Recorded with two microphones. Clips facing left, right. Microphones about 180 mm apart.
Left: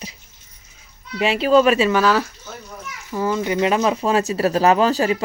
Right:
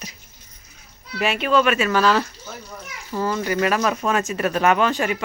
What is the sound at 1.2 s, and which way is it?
Speech, 30° left (ahead or behind).